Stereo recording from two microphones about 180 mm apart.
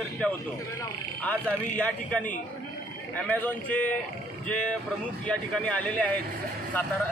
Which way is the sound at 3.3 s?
10° left (ahead or behind).